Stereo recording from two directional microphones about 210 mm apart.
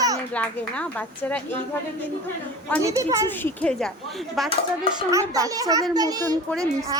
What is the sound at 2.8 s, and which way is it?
Speech, 15° right (ahead or behind).